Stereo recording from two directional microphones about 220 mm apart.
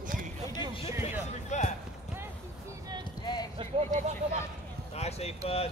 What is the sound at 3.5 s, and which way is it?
Speech, 30° right (ahead or behind).